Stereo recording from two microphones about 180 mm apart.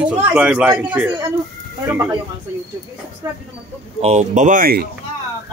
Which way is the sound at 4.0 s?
40° right (ahead or behind).